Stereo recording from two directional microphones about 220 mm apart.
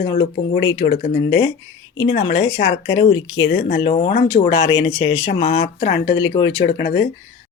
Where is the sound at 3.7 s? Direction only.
30° left (ahead or behind).